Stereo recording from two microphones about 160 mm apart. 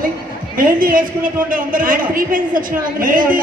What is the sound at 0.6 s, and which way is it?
A man's voice, 60° right (ahead or behind).